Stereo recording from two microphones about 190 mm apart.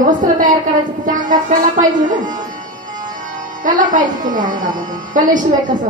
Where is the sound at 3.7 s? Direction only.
45° right (ahead or behind).